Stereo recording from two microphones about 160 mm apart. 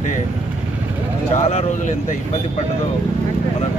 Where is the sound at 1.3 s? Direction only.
40° left (ahead or behind).